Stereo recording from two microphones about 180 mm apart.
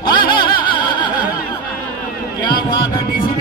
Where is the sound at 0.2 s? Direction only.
25° left (ahead or behind).